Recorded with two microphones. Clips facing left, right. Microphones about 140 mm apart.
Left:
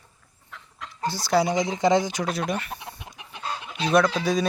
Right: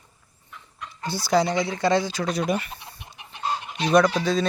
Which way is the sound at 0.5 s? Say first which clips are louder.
Left 1 dB; 90° left.